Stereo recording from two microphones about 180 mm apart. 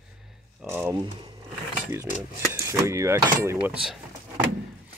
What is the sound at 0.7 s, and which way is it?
Speech, 10° right (ahead or behind).